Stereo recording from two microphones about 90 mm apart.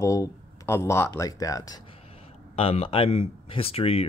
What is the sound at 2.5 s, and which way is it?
Speech, 90° left.